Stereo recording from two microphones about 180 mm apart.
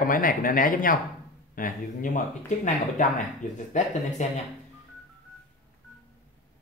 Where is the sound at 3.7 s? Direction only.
45° left (ahead or behind).